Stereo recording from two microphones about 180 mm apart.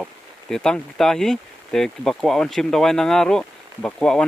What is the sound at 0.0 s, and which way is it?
Speech, 5° left (ahead or behind).